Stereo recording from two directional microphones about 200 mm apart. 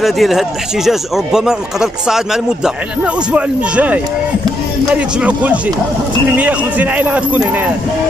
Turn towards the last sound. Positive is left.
turn(degrees=-5)  # may be behind; listen again after turning